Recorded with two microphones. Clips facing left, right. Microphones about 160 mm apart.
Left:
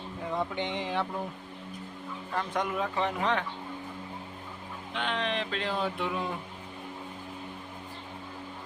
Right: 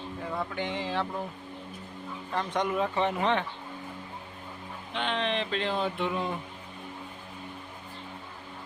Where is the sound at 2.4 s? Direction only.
Centre (ahead or behind).